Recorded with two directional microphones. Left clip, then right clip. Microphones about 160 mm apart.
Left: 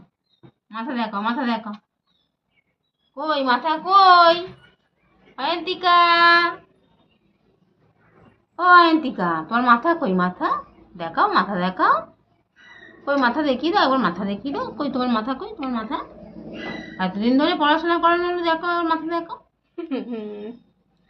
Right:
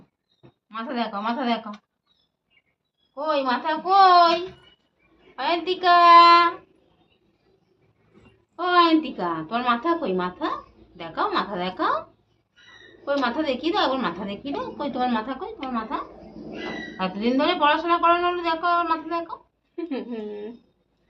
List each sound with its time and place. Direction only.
0.7 s a woman's voice: centre (ahead or behind)
3.2 s a woman's voice: 10° left (ahead or behind)
5.4 s a woman's voice: 5° left (ahead or behind)
8.5 s a woman's voice: 10° left (ahead or behind)
13.2 s a woman's voice: centre (ahead or behind)
17.0 s a woman's voice: centre (ahead or behind)